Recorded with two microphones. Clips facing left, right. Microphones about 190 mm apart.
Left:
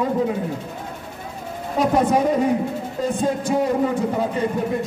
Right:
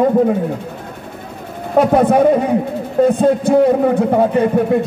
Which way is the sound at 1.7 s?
60° right (ahead or behind).